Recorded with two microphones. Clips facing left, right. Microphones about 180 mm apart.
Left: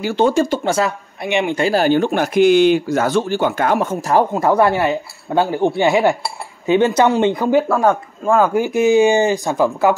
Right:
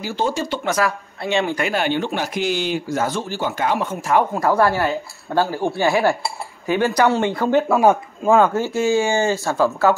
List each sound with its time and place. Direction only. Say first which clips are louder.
0.0 s speech: left 7 dB; 65° left (ahead or behind)
0.7 s speech: left 3 dB; 25° left (ahead or behind)
1.6 s speech: left 6 dB; 35° left (ahead or behind)
4.3 s speech: left 3 dB; 20° left (ahead or behind)
7.6 s speech: even; 10° right (ahead or behind)
8.5 s speech: left 5 dB; 15° left (ahead or behind)